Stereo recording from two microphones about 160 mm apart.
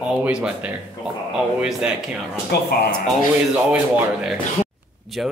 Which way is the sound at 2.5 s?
80° left.